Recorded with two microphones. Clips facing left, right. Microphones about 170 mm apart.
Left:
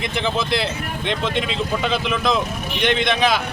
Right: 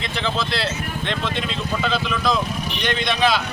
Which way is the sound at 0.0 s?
15° left (ahead or behind).